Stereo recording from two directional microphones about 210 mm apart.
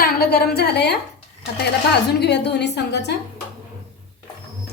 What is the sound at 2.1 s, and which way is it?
A woman's voice, 50° left (ahead or behind).